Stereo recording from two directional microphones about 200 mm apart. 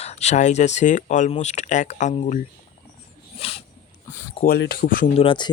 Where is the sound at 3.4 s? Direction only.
30° left (ahead or behind).